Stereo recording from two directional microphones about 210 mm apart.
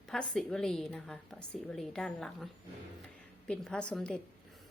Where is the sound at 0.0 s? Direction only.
Centre (ahead or behind).